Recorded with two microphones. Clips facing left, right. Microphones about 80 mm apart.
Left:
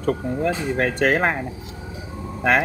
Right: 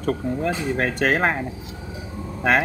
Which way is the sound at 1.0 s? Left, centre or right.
Centre.